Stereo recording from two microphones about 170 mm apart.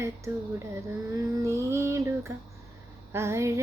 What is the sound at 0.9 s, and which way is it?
Female singing, 20° right (ahead or behind).